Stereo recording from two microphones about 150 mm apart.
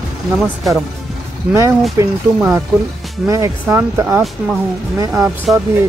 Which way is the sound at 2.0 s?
15° right (ahead or behind).